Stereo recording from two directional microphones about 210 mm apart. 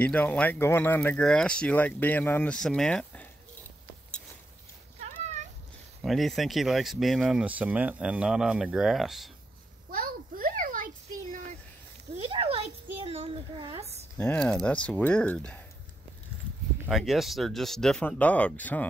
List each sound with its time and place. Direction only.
0.0 s speech: 5° left (ahead or behind)
6.0 s speech: centre (ahead or behind)
9.8 s a sound: 45° right (ahead or behind)
12.1 s a sound: 25° right (ahead or behind)
14.1 s speech: 5° left (ahead or behind)
16.8 s speech: centre (ahead or behind)